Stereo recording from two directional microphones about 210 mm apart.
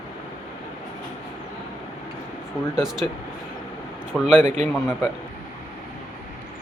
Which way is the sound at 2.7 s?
Centre (ahead or behind).